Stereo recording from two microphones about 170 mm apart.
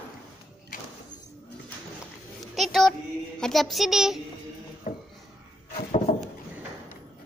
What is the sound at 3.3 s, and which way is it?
Speech, centre (ahead or behind).